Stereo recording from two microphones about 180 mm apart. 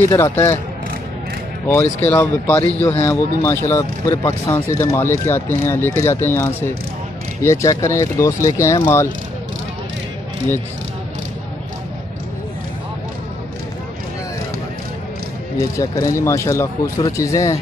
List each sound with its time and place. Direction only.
0.1 s speech: 15° left (ahead or behind)
2.0 s speech: 10° left (ahead or behind)
15.7 s speech: 20° left (ahead or behind)